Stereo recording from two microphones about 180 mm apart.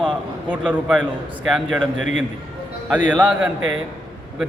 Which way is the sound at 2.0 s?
90° right.